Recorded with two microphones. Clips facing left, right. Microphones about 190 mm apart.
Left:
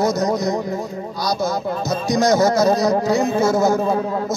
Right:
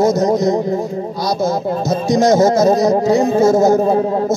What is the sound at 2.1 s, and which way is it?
Speech, 25° right (ahead or behind).